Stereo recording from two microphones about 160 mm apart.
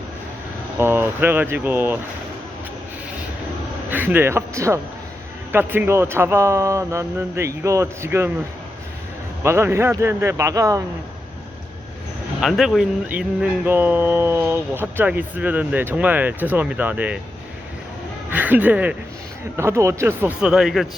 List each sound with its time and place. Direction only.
0.8 s speech: 15° right (ahead or behind)
3.8 s speech: 10° right (ahead or behind)
9.4 s speech: 15° right (ahead or behind)
12.4 s speech: centre (ahead or behind)
18.3 s speech: 10° right (ahead or behind)
20.4 s speech: 5° right (ahead or behind)